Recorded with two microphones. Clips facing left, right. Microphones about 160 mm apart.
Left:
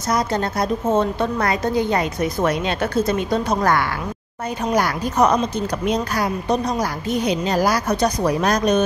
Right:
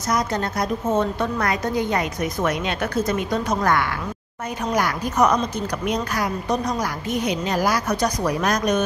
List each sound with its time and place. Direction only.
0.1 s a woman's voice: 30° left (ahead or behind)